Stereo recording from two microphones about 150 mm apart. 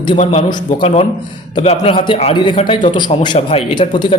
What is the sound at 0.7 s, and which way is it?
A man's voice, 45° left (ahead or behind).